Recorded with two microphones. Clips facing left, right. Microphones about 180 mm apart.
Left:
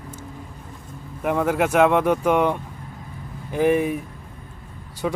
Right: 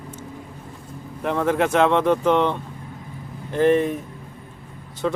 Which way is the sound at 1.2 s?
10° left (ahead or behind).